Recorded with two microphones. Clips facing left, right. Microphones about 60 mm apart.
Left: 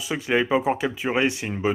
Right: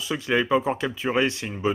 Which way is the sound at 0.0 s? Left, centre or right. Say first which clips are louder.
Left 1 dB; centre.